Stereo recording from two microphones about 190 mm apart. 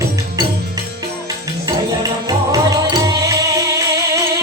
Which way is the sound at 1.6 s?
20° right (ahead or behind).